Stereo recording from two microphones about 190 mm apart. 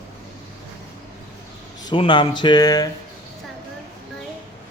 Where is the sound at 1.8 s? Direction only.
25° left (ahead or behind).